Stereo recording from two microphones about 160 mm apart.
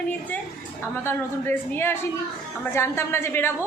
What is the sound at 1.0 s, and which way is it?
A woman's voice, 15° left (ahead or behind).